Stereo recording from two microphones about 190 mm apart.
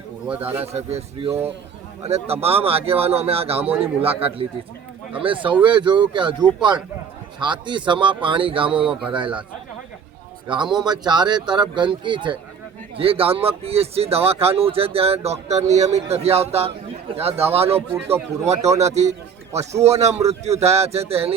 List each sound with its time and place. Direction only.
0.3 s speech: 10° right (ahead or behind)
0.6 s speech: 35° right (ahead or behind)
10.5 s speech: 25° right (ahead or behind)